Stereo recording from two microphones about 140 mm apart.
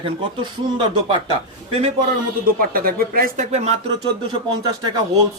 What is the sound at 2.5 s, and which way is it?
Speech, 90° right.